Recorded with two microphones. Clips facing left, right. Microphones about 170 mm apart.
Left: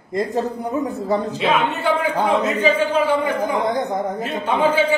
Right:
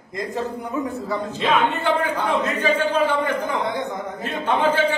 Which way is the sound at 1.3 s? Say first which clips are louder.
Left 1 dB; 10° left (ahead or behind).